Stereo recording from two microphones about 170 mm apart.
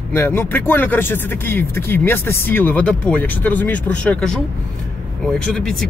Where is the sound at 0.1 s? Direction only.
15° left (ahead or behind).